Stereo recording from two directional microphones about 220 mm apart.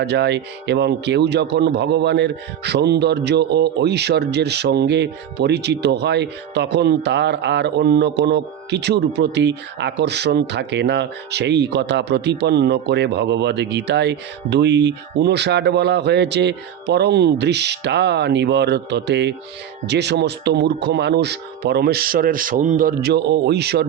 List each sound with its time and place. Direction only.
0.0 s speech: 50° right (ahead or behind)